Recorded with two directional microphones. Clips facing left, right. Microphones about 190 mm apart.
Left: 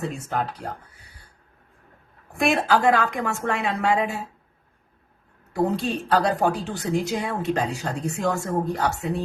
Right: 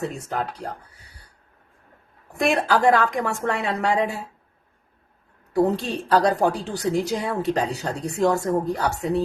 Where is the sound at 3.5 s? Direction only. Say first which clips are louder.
Left 2 dB; 35° right (ahead or behind).